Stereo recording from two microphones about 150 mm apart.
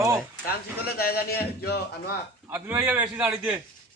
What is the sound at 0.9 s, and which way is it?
Speech, 90° left.